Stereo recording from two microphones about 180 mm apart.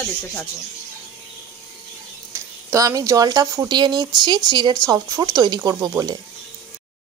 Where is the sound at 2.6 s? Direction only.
20° right (ahead or behind).